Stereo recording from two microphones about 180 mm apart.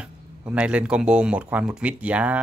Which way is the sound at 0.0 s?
5° right (ahead or behind).